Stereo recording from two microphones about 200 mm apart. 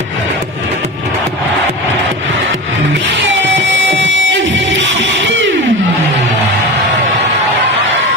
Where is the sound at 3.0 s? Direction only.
65° right (ahead or behind).